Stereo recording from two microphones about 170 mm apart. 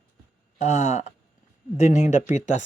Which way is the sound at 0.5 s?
40° left (ahead or behind).